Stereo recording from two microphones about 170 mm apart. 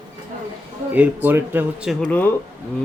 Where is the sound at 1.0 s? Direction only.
10° right (ahead or behind).